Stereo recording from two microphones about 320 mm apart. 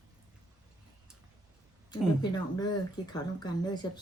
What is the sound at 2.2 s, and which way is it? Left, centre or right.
Speech, centre.